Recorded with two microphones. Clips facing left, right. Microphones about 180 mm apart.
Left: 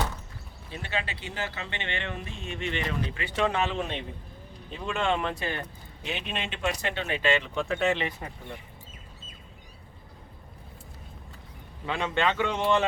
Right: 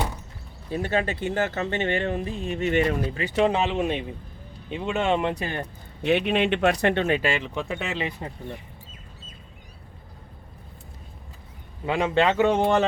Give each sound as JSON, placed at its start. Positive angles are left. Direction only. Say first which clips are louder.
{"t": 0.7, "sound": "speech", "louder": "right 9 dB", "side_deg": -45}
{"t": 3.4, "sound": "speech", "louder": "right 5 dB", "side_deg": -20}
{"t": 5.3, "sound": "speech", "louder": "right 3 dB", "side_deg": -45}
{"t": 7.7, "sound": "speech", "louder": "left 6 dB", "side_deg": -15}
{"t": 11.9, "sound": "speech", "louder": "right 6 dB", "side_deg": -20}
{"t": 12.1, "sound": "speech", "louder": "right 7 dB", "side_deg": -40}